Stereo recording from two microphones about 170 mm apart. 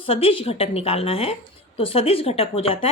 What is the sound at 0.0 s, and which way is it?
Speech, 35° left (ahead or behind).